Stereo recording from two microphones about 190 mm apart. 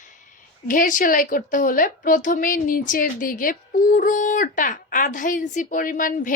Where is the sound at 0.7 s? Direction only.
45° left (ahead or behind).